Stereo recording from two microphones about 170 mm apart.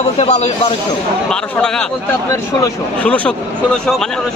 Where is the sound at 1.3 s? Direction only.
5° left (ahead or behind).